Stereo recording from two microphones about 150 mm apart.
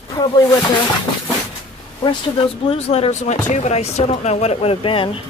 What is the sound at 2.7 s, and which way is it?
Speech, 40° left (ahead or behind).